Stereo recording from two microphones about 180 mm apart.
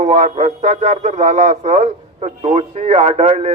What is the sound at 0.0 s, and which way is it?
Speech, 40° right (ahead or behind).